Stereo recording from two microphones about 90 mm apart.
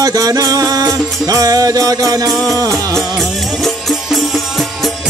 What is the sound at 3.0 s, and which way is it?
Music, centre (ahead or behind).